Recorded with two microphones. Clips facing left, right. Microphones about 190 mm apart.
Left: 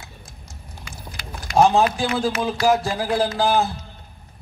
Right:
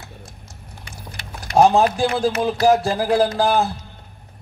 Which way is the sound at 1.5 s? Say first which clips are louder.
Right 2 dB; 40° right (ahead or behind).